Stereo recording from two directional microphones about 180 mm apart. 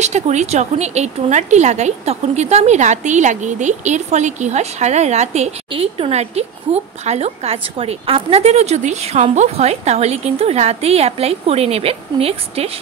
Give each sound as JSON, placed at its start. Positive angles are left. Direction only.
{"t": 0.0, "sound": "a woman's voice", "side_deg": -40}